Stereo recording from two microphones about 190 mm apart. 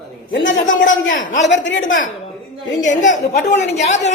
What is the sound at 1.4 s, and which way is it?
Speech, 70° left (ahead or behind).